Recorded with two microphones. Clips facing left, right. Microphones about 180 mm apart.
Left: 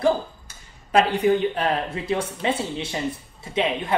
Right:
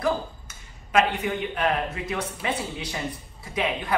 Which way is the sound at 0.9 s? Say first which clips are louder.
Left 5 dB; 35° left (ahead or behind).